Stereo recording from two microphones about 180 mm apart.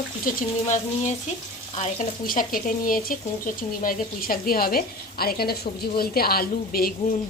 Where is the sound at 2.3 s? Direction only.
50° left (ahead or behind).